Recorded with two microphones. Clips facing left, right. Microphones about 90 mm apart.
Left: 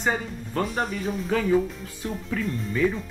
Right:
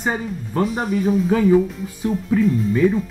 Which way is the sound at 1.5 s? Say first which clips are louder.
Right 6 dB; 15° right (ahead or behind).